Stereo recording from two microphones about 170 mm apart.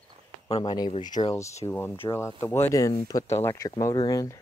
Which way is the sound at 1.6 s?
15° left (ahead or behind).